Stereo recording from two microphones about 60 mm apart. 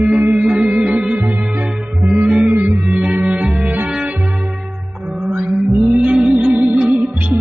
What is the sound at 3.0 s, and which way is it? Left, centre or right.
Music, centre.